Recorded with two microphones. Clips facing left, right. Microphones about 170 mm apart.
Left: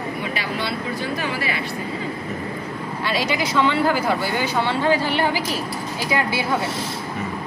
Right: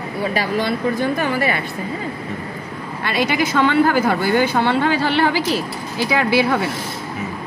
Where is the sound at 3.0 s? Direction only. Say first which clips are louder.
Right 4 dB; 55° right (ahead or behind); by 5.4 s 75° right (ahead or behind).